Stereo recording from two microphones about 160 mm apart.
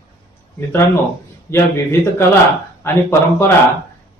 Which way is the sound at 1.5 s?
15° left (ahead or behind).